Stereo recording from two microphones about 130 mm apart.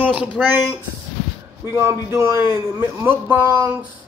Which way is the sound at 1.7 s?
20° right (ahead or behind).